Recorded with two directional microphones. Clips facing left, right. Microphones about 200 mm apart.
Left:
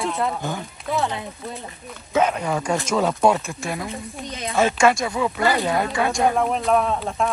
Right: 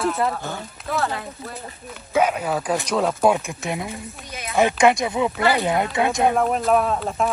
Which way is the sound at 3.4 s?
20° right (ahead or behind).